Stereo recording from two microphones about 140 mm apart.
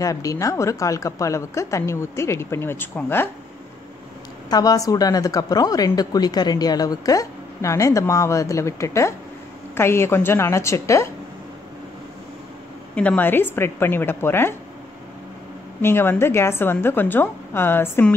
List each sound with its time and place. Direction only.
0.0 s a woman's voice: 25° left (ahead or behind)
4.5 s a woman's voice: 25° left (ahead or behind)
12.9 s a woman's voice: 10° left (ahead or behind)
15.8 s a woman's voice: 15° left (ahead or behind)